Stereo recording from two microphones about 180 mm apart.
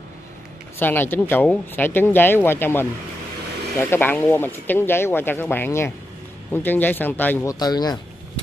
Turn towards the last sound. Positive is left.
turn(degrees=20)  # may be behind; listen again after turning